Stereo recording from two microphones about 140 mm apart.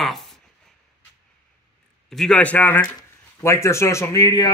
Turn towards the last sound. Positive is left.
turn(degrees=30)  # may be behind; listen again after turning